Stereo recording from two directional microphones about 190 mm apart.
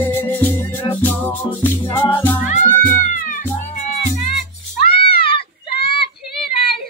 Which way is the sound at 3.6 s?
35° left (ahead or behind).